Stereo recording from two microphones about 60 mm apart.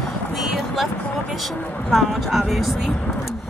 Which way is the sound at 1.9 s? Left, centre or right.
Centre.